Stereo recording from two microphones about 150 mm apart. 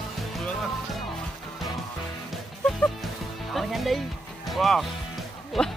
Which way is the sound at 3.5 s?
Centre (ahead or behind).